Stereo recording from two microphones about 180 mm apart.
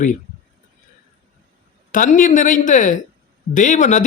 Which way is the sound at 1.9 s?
45° left (ahead or behind).